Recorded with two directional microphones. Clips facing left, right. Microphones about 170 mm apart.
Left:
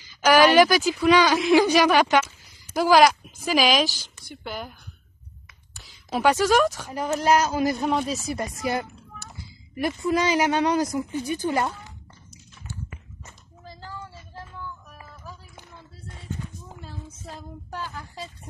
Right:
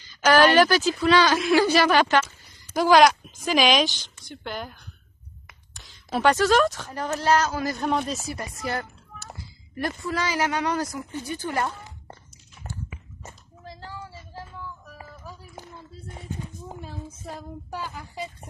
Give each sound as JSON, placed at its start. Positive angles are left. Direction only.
{"t": 0.0, "sound": "speech", "side_deg": 10}
{"t": 6.0, "sound": "speech", "side_deg": 15}
{"t": 8.3, "sound": "speech", "side_deg": 15}
{"t": 16.8, "sound": "a woman's voice", "side_deg": -10}